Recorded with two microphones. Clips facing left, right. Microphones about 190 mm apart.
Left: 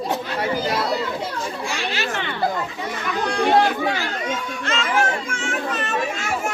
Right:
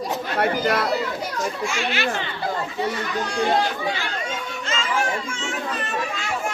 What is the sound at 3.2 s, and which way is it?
Chatter, 60° left (ahead or behind).